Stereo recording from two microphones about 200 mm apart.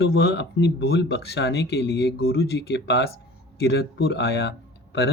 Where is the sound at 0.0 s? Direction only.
55° left (ahead or behind).